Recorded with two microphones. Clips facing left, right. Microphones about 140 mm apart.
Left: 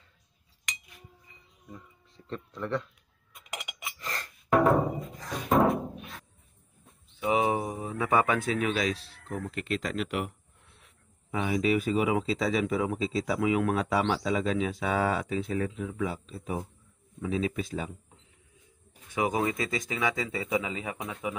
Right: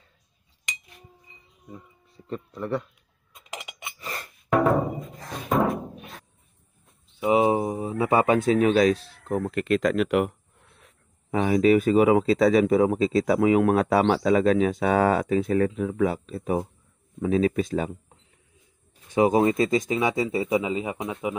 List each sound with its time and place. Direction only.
1.7 s speech: 5° right (ahead or behind)
3.3 s cutlery: centre (ahead or behind)
4.0 s music: 10° right (ahead or behind)
4.5 s music: centre (ahead or behind)
5.5 s a sound: centre (ahead or behind)
7.2 s a sound: 25° right (ahead or behind)
8.5 s speech: 40° right (ahead or behind)
9.4 s speech: 60° right (ahead or behind)
10.8 s speech: 45° right (ahead or behind)
19.1 s speech: 35° right (ahead or behind)
19.9 s speech: 20° right (ahead or behind)